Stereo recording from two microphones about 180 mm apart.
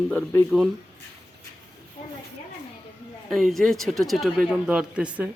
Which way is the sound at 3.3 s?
Centre (ahead or behind).